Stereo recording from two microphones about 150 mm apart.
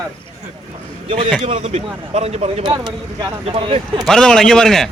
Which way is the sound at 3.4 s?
40° right (ahead or behind).